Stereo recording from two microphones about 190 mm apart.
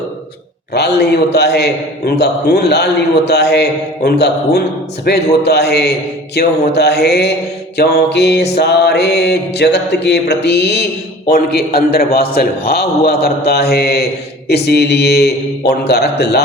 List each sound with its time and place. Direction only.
0.7 s a man's voice: 60° left (ahead or behind)